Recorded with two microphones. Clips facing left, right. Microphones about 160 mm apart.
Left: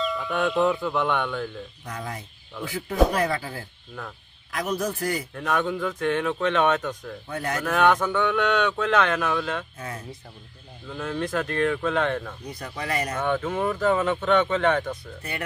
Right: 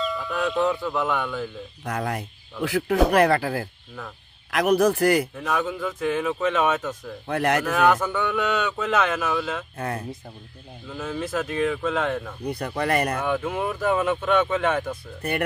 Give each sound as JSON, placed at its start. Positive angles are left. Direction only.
{"t": 0.0, "sound": "speech", "side_deg": 0}
{"t": 1.9, "sound": "speech", "side_deg": -65}
{"t": 5.3, "sound": "speech", "side_deg": -5}
{"t": 7.2, "sound": "speech", "side_deg": -75}
{"t": 7.6, "sound": "speech", "side_deg": 0}
{"t": 9.8, "sound": "speech", "side_deg": -60}
{"t": 10.9, "sound": "speech", "side_deg": -5}
{"t": 12.4, "sound": "speech", "side_deg": -60}
{"t": 13.2, "sound": "speech", "side_deg": -10}